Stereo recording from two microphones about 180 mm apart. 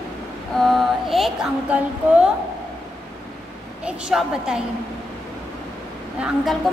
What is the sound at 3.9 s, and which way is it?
Speech, 5° right (ahead or behind).